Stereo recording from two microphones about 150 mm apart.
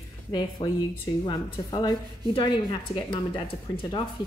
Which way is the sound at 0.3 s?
30° left (ahead or behind).